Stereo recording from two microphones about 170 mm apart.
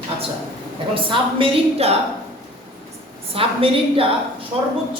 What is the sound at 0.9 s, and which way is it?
A woman's voice, 30° right (ahead or behind).